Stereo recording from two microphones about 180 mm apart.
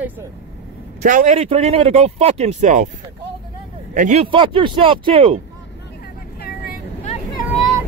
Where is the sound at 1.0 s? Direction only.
45° right (ahead or behind).